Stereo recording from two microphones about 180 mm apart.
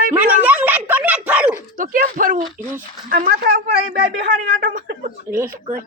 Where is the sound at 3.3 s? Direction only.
65° right (ahead or behind); by 5.1 s 45° right (ahead or behind).